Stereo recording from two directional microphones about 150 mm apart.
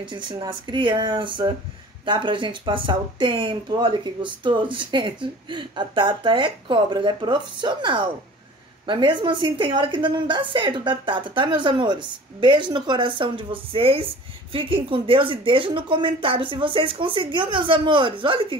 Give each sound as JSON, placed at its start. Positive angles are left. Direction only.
{"t": 0.0, "sound": "speech", "side_deg": -30}